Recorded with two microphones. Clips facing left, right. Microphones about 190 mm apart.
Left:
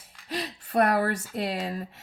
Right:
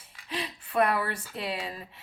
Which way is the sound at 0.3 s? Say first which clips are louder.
Left 3 dB; 40° left (ahead or behind).